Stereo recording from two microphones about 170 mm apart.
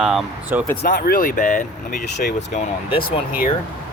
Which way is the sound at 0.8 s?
60° left (ahead or behind).